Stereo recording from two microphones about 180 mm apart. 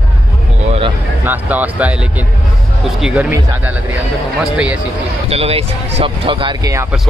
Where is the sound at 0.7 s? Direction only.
30° right (ahead or behind).